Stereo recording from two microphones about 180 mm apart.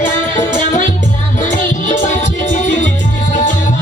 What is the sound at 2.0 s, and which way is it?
Music, 45° left (ahead or behind).